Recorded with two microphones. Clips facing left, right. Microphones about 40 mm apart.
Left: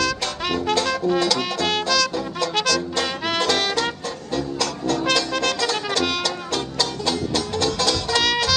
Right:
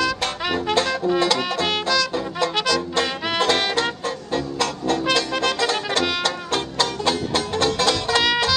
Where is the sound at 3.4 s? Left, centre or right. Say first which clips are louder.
Right 2 dB; right.